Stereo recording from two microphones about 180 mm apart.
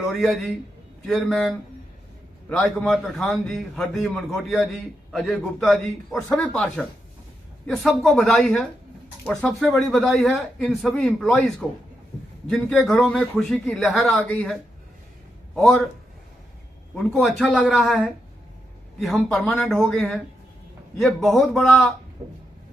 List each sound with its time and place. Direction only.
0.1 s speech: centre (ahead or behind)
2.5 s a man's voice: centre (ahead or behind)
16.9 s speech: centre (ahead or behind)
22.2 s a sound: 20° right (ahead or behind)